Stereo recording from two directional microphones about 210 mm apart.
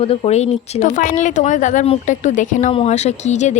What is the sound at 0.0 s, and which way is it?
Speech, 30° left (ahead or behind).